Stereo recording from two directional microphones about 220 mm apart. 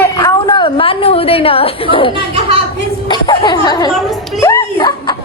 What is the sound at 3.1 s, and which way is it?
Speech, 20° left (ahead or behind).